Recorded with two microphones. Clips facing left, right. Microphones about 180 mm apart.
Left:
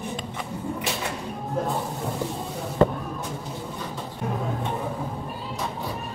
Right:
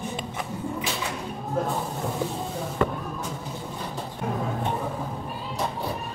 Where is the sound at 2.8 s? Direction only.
30° left (ahead or behind).